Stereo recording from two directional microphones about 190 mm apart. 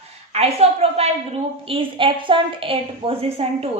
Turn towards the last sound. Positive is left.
turn(degrees=-30)  # may be behind; listen again after turning